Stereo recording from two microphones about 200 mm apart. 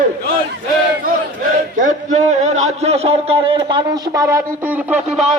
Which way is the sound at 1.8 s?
40° right (ahead or behind).